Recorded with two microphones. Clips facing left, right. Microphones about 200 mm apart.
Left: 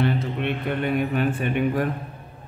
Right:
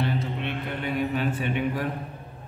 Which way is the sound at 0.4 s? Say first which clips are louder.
Left 6 dB; 55° left (ahead or behind).